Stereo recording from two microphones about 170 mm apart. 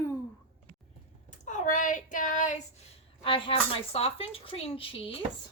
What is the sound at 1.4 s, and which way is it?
Speech, 45° left (ahead or behind).